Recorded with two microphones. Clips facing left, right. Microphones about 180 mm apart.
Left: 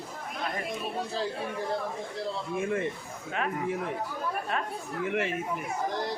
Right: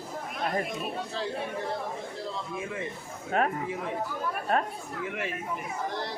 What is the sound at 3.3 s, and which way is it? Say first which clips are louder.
Speech: right 6 dB; 45° right (ahead or behind).